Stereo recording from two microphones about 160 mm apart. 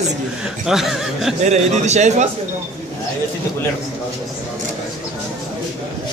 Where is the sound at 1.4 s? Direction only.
45° right (ahead or behind).